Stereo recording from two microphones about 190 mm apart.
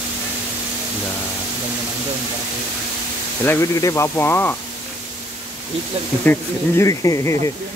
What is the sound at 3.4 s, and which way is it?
Speech, 15° left (ahead or behind).